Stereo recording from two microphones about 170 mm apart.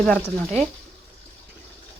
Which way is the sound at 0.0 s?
5° left (ahead or behind).